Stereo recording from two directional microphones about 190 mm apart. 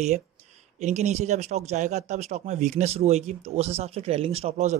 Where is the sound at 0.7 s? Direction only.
35° right (ahead or behind).